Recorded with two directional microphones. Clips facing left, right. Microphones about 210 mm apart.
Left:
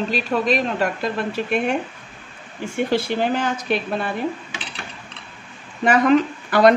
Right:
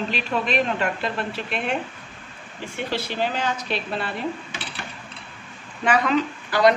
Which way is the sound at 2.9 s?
50° left (ahead or behind).